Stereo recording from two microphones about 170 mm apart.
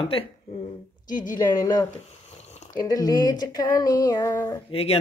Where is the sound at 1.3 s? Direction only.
25° left (ahead or behind).